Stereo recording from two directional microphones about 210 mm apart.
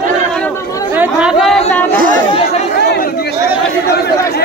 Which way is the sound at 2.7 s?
50° left (ahead or behind).